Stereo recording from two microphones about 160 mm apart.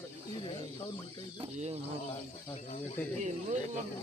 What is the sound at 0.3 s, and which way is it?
Snake, 30° left (ahead or behind).